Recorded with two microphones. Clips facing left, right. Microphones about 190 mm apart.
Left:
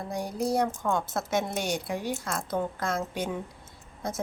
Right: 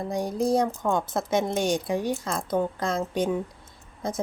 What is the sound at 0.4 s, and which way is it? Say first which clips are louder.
A woman's voice: right 3 dB; 20° right (ahead or behind).